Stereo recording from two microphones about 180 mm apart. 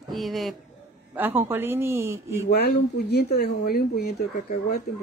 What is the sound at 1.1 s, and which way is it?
A man's voice, 10° right (ahead or behind).